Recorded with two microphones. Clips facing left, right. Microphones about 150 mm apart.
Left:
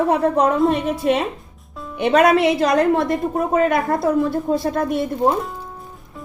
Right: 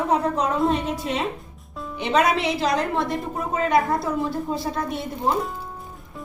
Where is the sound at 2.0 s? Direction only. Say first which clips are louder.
Left 6 dB; 55° left (ahead or behind).